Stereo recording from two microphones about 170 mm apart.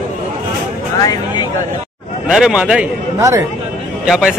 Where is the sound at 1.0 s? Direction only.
25° left (ahead or behind).